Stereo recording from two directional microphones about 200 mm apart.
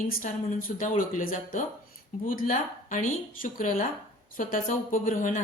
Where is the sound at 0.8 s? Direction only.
40° left (ahead or behind).